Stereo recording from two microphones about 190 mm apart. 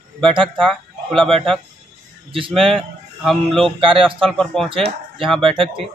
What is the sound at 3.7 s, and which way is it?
Speech, 25° right (ahead or behind).